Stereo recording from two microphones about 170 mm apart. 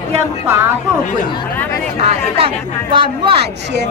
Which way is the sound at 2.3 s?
30° right (ahead or behind).